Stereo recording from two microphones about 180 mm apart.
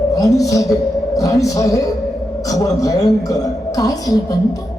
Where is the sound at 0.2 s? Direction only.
20° left (ahead or behind).